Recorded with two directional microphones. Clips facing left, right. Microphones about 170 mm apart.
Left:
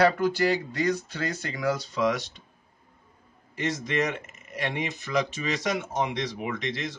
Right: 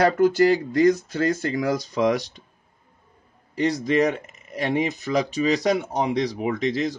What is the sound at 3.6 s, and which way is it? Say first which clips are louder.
Speech: right 7 dB; 35° right (ahead or behind).